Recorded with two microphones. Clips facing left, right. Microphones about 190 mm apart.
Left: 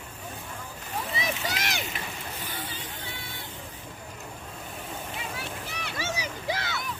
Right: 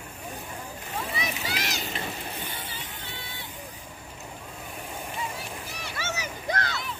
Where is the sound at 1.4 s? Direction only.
55° left (ahead or behind).